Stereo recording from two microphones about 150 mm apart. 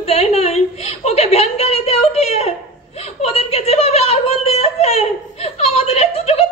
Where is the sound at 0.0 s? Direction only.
45° left (ahead or behind).